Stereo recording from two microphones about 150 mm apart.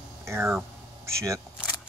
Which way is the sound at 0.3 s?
10° right (ahead or behind).